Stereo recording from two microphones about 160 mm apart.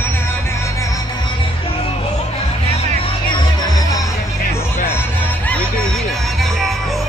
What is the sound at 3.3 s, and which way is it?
Music, 25° left (ahead or behind).